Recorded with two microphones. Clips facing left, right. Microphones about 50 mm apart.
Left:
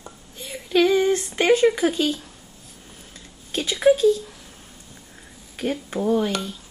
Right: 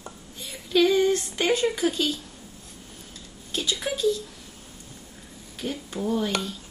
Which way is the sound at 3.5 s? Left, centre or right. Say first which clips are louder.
Left 3 dB; left.